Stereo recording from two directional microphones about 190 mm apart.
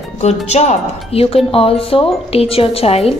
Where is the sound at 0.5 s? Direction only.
35° left (ahead or behind).